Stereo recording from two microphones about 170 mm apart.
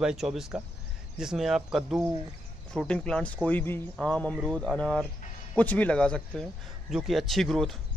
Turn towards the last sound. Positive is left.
turn(degrees=0)  # may be behind; listen again after turning